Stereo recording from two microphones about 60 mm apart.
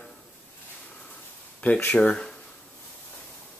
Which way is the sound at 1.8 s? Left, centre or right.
Left.